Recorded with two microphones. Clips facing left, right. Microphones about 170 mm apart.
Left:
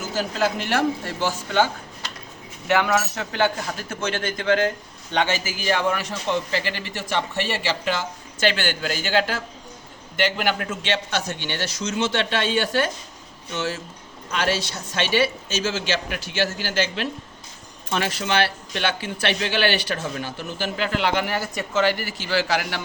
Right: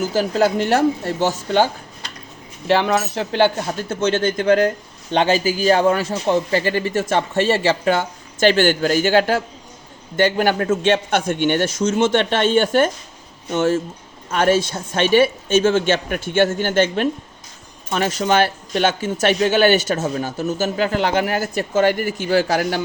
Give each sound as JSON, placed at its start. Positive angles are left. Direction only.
{"t": 0.2, "sound": "speech", "side_deg": -35}
{"t": 2.6, "sound": "speech", "side_deg": -30}
{"t": 10.8, "sound": "speech", "side_deg": -50}